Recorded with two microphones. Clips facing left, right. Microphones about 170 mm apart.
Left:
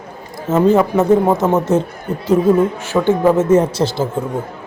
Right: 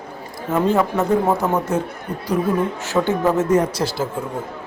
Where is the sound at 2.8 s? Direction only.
15° left (ahead or behind).